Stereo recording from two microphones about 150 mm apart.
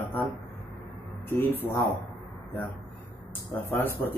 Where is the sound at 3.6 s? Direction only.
15° left (ahead or behind).